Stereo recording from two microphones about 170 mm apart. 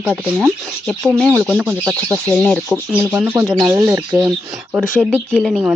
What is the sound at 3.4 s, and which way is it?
Speech, 20° right (ahead or behind).